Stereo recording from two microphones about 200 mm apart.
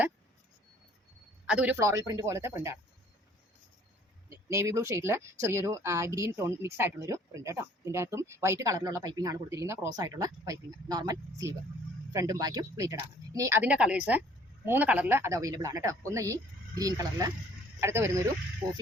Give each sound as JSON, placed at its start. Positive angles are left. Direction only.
{"t": 1.5, "sound": "speech", "side_deg": -5}
{"t": 4.3, "sound": "speech", "side_deg": -15}